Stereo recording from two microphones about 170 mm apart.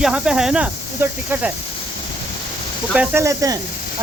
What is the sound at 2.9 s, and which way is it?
Speech, 5° right (ahead or behind).